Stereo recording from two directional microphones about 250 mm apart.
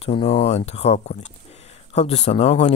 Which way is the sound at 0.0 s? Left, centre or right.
Left.